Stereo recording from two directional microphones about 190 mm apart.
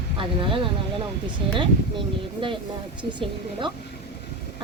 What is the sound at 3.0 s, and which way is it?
Speech, 25° right (ahead or behind).